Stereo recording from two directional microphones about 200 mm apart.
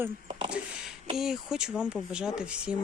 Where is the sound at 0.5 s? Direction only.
5° right (ahead or behind).